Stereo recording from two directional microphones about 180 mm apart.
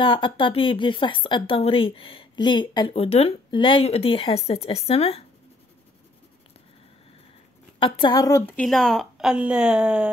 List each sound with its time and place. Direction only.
0.0 s speech: 30° left (ahead or behind)
7.8 s a woman's voice: 25° left (ahead or behind); by 10.0 s 5° right (ahead or behind)